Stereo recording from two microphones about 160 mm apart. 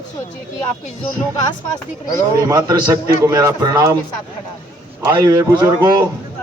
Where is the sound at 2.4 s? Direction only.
25° right (ahead or behind).